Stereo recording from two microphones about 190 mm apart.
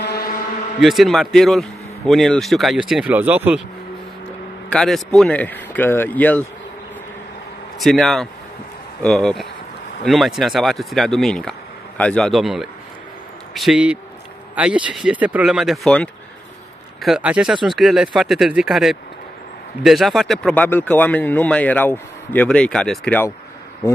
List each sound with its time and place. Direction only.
0.0 s a sound: 55° left (ahead or behind)
0.7 s a man's voice: centre (ahead or behind)
4.6 s speech: 5° left (ahead or behind)
7.8 s a man's voice: centre (ahead or behind)